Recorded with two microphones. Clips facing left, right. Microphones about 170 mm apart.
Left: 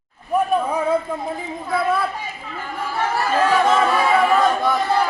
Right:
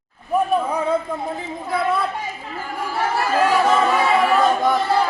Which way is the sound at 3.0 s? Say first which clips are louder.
Even; 10° right (ahead or behind).